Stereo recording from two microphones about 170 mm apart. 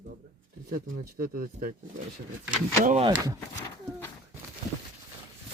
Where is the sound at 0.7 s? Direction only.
55° right (ahead or behind).